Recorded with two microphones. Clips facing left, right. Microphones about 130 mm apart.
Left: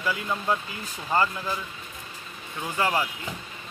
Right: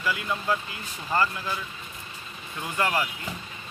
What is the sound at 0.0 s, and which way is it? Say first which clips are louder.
Speech: left 1 dB; 20° left (ahead or behind).